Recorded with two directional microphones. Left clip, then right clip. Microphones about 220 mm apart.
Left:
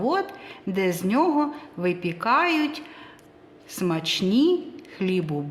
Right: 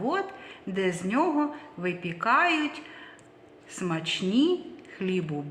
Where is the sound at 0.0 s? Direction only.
60° left (ahead or behind).